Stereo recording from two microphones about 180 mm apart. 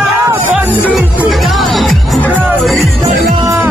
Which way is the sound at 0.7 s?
10° left (ahead or behind).